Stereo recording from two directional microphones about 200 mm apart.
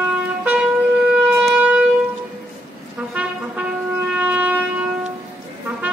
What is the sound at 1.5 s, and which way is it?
Shofar, 5° right (ahead or behind).